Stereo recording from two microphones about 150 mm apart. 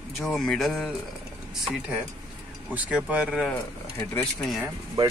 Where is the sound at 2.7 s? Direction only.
10° right (ahead or behind).